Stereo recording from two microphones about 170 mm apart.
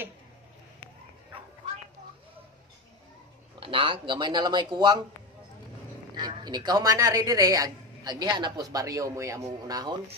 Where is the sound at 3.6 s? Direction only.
30° right (ahead or behind).